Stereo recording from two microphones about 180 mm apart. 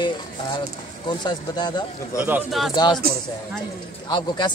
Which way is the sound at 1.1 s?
25° left (ahead or behind).